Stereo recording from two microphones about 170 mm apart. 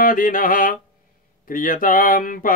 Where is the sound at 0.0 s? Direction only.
55° left (ahead or behind).